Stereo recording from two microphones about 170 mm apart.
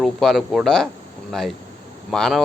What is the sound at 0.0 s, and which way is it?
Speech, centre (ahead or behind).